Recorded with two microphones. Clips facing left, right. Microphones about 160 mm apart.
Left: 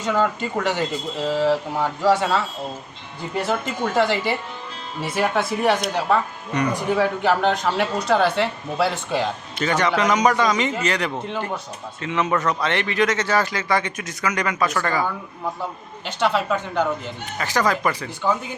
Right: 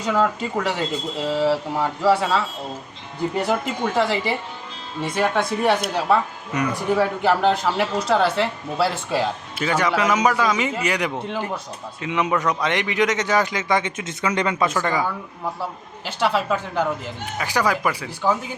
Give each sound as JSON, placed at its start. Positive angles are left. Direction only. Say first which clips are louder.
{"t": 0.1, "sound": "speech", "louder": "even", "side_deg": 0}
{"t": 3.8, "sound": "a man's voice", "louder": "left 1 dB", "side_deg": 0}
{"t": 14.8, "sound": "a man's voice", "louder": "even", "side_deg": -15}
{"t": 16.0, "sound": "a man's voice", "louder": "even", "side_deg": -5}